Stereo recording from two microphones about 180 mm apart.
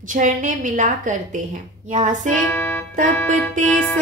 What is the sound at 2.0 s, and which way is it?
Music, 45° right (ahead or behind).